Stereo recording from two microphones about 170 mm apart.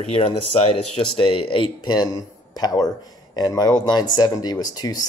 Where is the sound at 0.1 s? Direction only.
30° left (ahead or behind).